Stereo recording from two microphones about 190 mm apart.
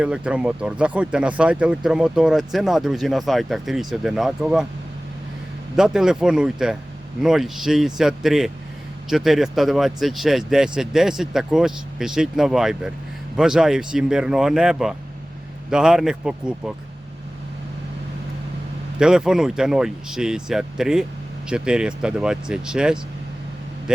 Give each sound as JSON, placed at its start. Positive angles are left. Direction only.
{"t": 0.0, "sound": "speech", "side_deg": -5}
{"t": 5.7, "sound": "speech", "side_deg": -5}
{"t": 18.9, "sound": "speech", "side_deg": -5}